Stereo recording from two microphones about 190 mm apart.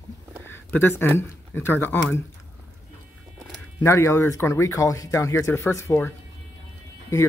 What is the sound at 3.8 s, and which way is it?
Speech, 15° left (ahead or behind).